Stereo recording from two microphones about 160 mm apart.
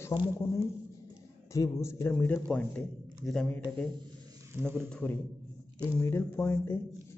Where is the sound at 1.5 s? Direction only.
20° left (ahead or behind).